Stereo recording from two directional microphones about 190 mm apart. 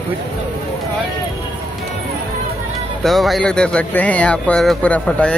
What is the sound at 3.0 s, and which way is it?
Speech, centre (ahead or behind).